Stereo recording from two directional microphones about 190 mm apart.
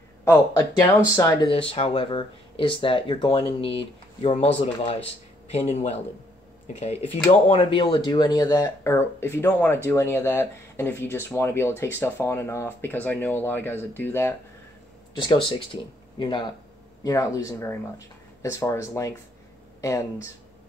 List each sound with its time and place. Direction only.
0.2 s speech: 15° left (ahead or behind)
1.7 s speech: 30° left (ahead or behind)
4.7 s speech: 30° left (ahead or behind); by 14.3 s 10° left (ahead or behind)
15.2 s speech: 25° left (ahead or behind)